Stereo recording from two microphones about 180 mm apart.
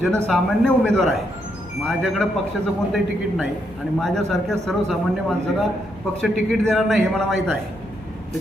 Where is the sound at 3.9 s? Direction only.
Centre (ahead or behind).